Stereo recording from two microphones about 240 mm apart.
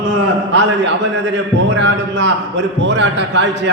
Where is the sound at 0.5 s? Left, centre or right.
Right.